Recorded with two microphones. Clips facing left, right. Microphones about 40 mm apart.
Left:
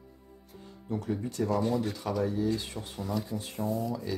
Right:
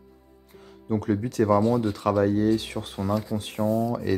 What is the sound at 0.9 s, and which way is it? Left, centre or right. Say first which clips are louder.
Speech: right 7 dB; right.